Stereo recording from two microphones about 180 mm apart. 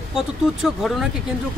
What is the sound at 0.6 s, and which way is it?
Speech, centre (ahead or behind).